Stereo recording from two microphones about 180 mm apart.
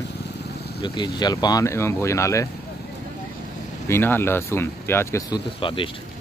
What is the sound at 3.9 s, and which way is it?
Speech, 10° left (ahead or behind).